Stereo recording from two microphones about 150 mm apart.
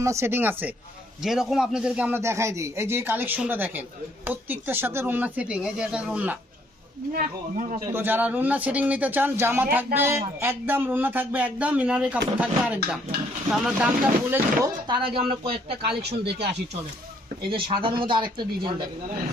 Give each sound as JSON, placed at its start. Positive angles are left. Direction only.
{"t": 0.0, "sound": "speech", "side_deg": -20}
{"t": 1.2, "sound": "speech", "side_deg": -5}
{"t": 7.9, "sound": "speech", "side_deg": -15}
{"t": 14.8, "sound": "speech", "side_deg": -35}
{"t": 15.9, "sound": "speech", "side_deg": -90}
{"t": 17.5, "sound": "speech", "side_deg": -35}